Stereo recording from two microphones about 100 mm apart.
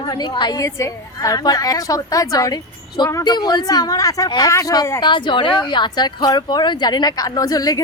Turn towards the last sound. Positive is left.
turn(degrees=40)  # may be behind; listen again after turning